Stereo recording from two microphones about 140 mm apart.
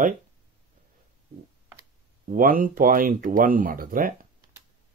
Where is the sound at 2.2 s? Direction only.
85° right.